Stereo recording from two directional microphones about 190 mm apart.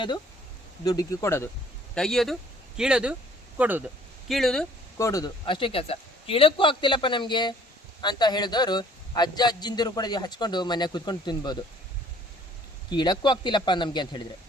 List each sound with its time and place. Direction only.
0.9 s speech: 20° left (ahead or behind)
2.0 s speech: centre (ahead or behind)
4.3 s speech: centre (ahead or behind)
4.9 s a man's voice: 15° left (ahead or behind)
12.9 s a man's voice: 25° left (ahead or behind)